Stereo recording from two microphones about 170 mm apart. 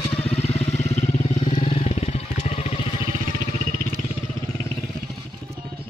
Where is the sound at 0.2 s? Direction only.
35° left (ahead or behind).